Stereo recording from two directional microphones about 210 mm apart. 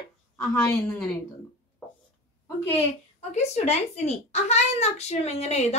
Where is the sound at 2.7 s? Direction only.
30° left (ahead or behind).